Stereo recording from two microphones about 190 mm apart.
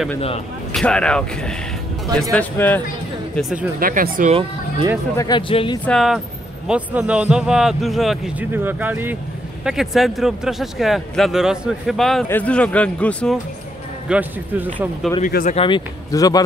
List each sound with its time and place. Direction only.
0.7 s speech: 5° left (ahead or behind)
3.3 s speech: centre (ahead or behind)
3.8 s speech: 45° right (ahead or behind)
5.1 s speech: 20° left (ahead or behind)
5.9 s a man's voice: centre (ahead or behind)
14.0 s a man's voice: 10° right (ahead or behind)
15.2 s speech: 45° left (ahead or behind)
15.5 s speech: 25° left (ahead or behind)